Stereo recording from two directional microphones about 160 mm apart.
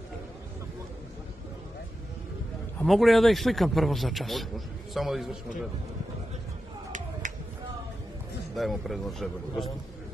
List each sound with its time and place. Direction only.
2.8 s a man's voice: centre (ahead or behind)
6.9 s a sound: 50° right (ahead or behind)
8.5 s a man's voice: centre (ahead or behind)